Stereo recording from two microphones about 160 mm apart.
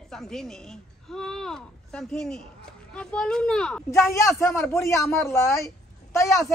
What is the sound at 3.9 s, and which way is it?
Speech, 15° left (ahead or behind).